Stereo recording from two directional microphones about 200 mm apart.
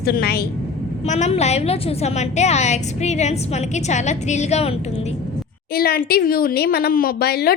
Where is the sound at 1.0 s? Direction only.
35° left (ahead or behind).